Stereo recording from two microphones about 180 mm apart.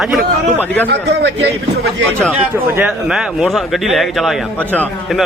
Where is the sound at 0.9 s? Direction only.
65° right (ahead or behind).